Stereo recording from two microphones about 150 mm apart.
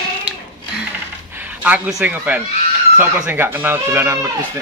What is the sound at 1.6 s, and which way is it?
Speech, 5° right (ahead or behind).